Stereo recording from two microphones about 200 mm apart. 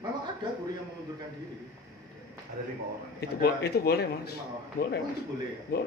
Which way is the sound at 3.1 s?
55° left (ahead or behind).